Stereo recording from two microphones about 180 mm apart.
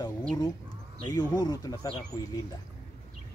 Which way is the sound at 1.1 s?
20° left (ahead or behind).